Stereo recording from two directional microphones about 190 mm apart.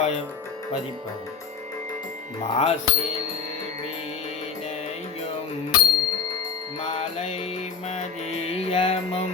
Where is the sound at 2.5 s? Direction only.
35° left (ahead or behind).